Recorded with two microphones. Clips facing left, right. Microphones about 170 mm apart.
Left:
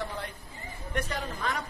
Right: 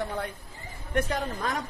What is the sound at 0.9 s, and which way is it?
Speech, 45° right (ahead or behind).